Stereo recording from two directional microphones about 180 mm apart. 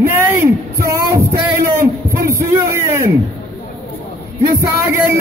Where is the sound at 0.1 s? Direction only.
15° right (ahead or behind).